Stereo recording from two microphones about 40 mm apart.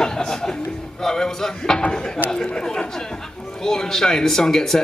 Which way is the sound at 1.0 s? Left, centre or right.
Centre.